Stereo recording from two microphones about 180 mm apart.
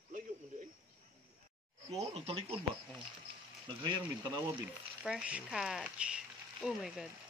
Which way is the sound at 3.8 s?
25° right (ahead or behind).